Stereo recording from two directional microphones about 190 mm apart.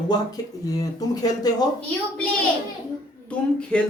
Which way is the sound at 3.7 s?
5° left (ahead or behind).